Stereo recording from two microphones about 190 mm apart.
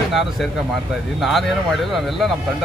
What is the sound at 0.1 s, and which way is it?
Speech, centre (ahead or behind).